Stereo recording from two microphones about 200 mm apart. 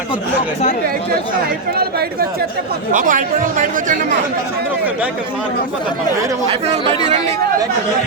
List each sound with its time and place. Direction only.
2.9 s speech: 40° right (ahead or behind)
6.5 s speech: 35° right (ahead or behind)